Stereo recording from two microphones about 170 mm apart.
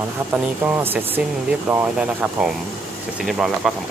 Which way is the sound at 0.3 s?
10° right (ahead or behind).